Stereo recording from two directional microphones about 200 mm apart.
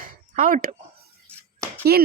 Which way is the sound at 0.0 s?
45° right (ahead or behind).